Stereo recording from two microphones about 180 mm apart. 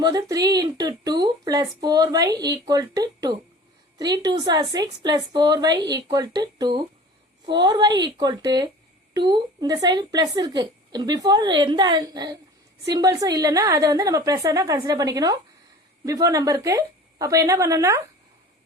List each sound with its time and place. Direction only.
0.0 s a woman's voice: 20° right (ahead or behind)